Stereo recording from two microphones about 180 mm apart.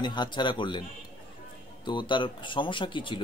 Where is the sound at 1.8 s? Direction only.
25° left (ahead or behind).